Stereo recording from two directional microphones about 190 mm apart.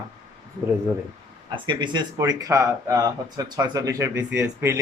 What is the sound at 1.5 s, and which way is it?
A man's voice, 25° right (ahead or behind).